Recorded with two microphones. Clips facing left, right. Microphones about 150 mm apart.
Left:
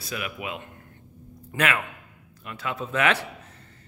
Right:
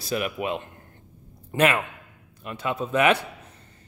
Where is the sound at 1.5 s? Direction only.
25° right (ahead or behind).